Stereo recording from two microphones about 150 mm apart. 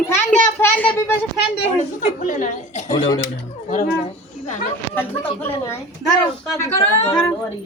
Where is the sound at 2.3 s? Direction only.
60° left (ahead or behind).